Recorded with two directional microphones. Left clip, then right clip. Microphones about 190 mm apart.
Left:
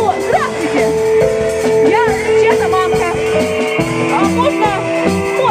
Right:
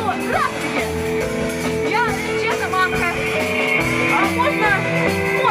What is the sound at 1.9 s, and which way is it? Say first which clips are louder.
Music: left 8 dB; 30° left (ahead or behind).